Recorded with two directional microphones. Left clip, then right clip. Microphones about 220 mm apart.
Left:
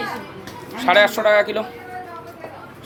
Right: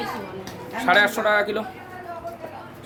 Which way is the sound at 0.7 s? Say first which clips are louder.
Left 3 dB; 10° right (ahead or behind).